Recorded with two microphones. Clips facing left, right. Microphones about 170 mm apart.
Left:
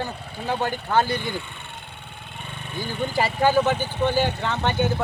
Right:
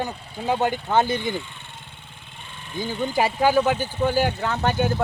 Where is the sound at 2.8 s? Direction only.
15° right (ahead or behind).